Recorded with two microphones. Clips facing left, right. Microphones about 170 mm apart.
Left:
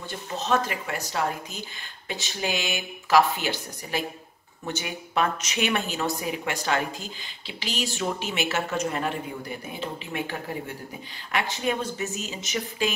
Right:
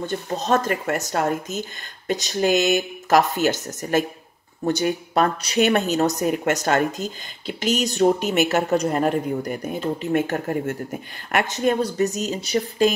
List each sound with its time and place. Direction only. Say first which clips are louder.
0.3 s speech: right 4 dB; 40° right (ahead or behind)